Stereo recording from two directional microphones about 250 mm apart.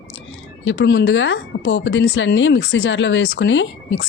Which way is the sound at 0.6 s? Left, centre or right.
Left.